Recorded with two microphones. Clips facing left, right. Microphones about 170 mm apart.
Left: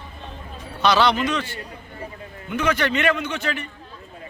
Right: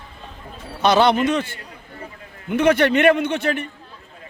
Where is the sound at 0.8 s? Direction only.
50° right (ahead or behind).